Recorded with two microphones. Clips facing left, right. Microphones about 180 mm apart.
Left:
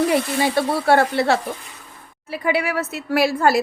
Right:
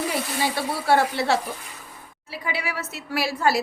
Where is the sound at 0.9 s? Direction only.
55° left (ahead or behind).